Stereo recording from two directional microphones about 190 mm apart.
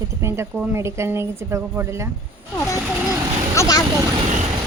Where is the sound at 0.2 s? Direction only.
15° right (ahead or behind).